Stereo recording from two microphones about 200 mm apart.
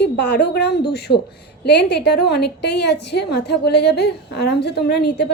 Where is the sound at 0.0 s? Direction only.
55° left (ahead or behind).